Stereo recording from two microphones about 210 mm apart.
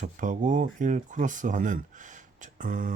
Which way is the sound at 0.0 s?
35° right (ahead or behind).